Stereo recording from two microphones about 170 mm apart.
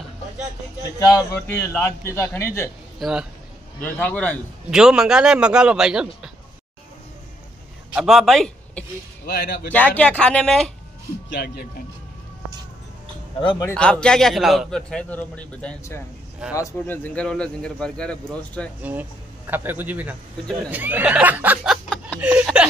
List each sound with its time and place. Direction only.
0.9 s a man's voice: 20° left (ahead or behind)
3.0 s a man's voice: 5° right (ahead or behind)
3.8 s a man's voice: 10° left (ahead or behind)
4.6 s a man's voice: 5° right (ahead or behind)
7.9 s speech: 5° right (ahead or behind)
9.2 s speech: 75° left (ahead or behind)
9.7 s a man's voice: 10° left (ahead or behind)
11.3 s speech: 70° left (ahead or behind)
13.4 s speech: 30° left (ahead or behind)
13.7 s a man's voice: 5° left (ahead or behind)
18.8 s speech: 10° right (ahead or behind)
21.8 s chuckle: 5° left (ahead or behind)
22.2 s speech: 10° right (ahead or behind)